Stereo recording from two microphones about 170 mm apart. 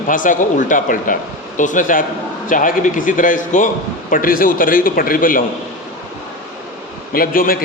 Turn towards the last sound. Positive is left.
turn(degrees=55)  # may be behind; listen again after turning